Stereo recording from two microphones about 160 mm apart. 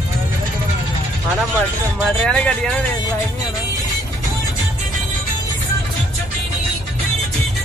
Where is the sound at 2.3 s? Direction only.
5° left (ahead or behind).